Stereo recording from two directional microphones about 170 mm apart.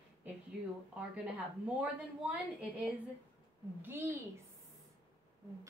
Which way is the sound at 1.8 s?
10° right (ahead or behind).